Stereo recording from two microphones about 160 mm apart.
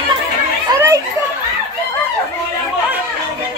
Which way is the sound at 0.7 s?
20° right (ahead or behind).